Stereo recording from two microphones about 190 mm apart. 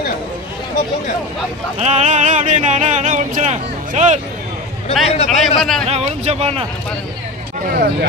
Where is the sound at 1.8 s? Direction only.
40° right (ahead or behind).